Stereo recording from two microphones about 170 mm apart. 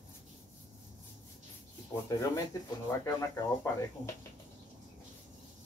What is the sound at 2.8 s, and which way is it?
Speech, 15° left (ahead or behind).